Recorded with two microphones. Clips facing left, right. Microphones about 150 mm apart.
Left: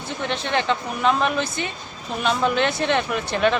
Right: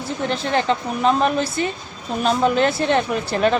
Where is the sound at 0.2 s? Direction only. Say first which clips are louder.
Right 3 dB; 35° right (ahead or behind).